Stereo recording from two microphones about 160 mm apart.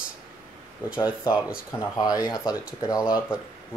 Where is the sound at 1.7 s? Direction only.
25° left (ahead or behind).